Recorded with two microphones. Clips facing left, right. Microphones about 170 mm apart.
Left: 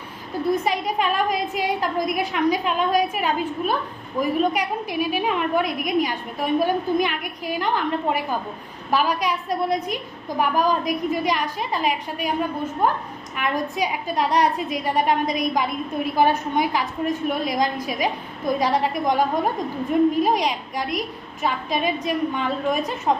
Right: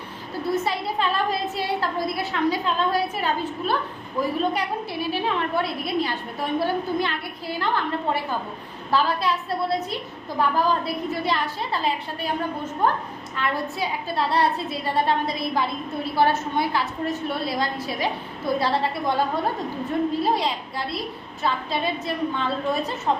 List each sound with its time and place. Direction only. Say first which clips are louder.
0.4 s a woman's voice: left 3 dB; 15° left (ahead or behind)